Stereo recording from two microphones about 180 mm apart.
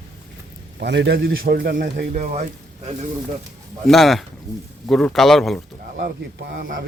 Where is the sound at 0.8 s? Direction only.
70° right (ahead or behind); by 2.4 s 45° right (ahead or behind).